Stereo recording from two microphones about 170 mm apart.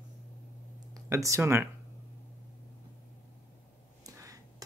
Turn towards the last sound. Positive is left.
turn(degrees=-20)  # may be behind; listen again after turning